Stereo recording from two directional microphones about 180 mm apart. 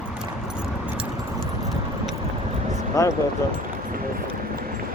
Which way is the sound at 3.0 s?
15° left (ahead or behind).